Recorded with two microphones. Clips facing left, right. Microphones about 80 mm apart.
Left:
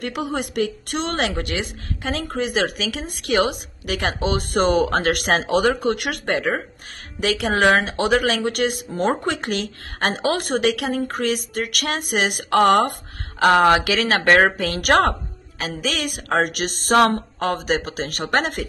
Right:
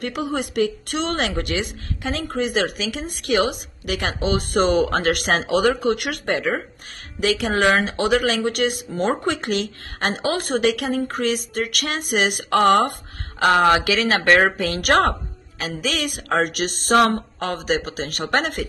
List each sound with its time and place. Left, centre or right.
0.0 s a woman's voice: left